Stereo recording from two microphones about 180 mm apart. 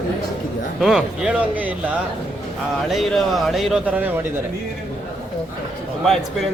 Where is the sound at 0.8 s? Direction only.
5° right (ahead or behind).